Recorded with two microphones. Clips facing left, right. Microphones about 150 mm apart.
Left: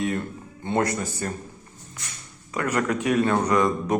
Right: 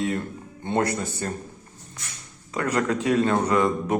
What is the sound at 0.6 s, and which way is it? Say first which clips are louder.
Speech: even; 25° right (ahead or behind).